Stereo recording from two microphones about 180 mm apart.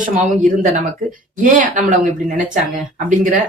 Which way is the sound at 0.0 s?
45° right (ahead or behind).